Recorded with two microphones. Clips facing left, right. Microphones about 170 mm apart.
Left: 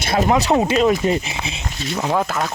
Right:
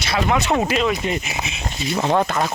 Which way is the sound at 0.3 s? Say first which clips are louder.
Left 2 dB; 35° left (ahead or behind).